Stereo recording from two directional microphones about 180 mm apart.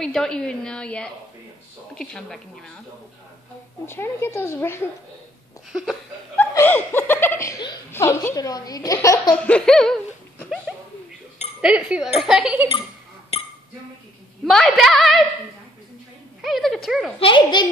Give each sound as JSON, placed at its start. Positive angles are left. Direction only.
{"t": 0.0, "sound": "a woman's voice", "side_deg": 0}
{"t": 3.8, "sound": "speech", "side_deg": 15}
{"t": 5.7, "sound": "a woman's voice", "side_deg": 0}
{"t": 6.3, "sound": "speech", "side_deg": 10}
{"t": 9.3, "sound": "a woman's voice", "side_deg": 5}
{"t": 11.6, "sound": "a woman's voice", "side_deg": -5}
{"t": 13.3, "sound": "chink", "side_deg": 35}
{"t": 14.4, "sound": "a woman's voice", "side_deg": 0}
{"t": 16.3, "sound": "a woman's voice", "side_deg": 0}
{"t": 17.2, "sound": "a child's voice", "side_deg": 25}